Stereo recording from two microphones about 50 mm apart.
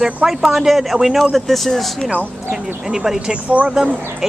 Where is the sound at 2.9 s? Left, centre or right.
Centre.